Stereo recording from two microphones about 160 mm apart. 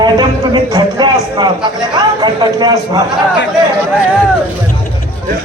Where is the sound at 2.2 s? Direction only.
25° right (ahead or behind).